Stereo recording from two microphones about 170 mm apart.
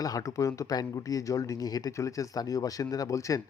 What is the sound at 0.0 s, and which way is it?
Speech, 20° left (ahead or behind).